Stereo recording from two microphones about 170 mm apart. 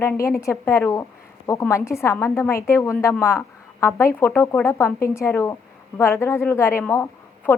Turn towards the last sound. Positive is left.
turn(degrees=15)  # may be behind; listen again after turning